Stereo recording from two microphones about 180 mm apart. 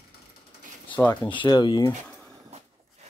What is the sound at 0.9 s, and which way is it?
Speech, 10° left (ahead or behind).